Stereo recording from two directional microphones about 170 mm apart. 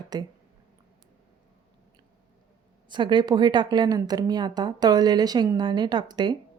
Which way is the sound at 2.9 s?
25° right (ahead or behind).